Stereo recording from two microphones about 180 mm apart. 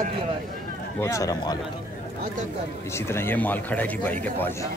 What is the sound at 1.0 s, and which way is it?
Speech, 20° left (ahead or behind).